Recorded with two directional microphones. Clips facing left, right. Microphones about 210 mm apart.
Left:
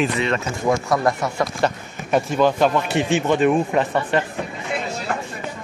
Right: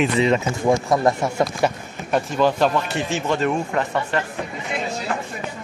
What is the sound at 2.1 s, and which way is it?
Speech, 5° left (ahead or behind).